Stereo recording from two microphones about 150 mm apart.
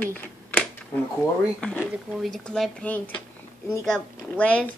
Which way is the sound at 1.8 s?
10° right (ahead or behind).